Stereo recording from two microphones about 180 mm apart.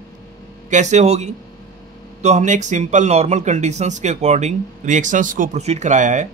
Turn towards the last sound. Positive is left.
turn(degrees=-40)  # may be behind; listen again after turning